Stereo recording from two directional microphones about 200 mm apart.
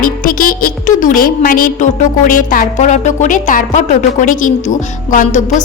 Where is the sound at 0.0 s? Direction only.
45° left (ahead or behind).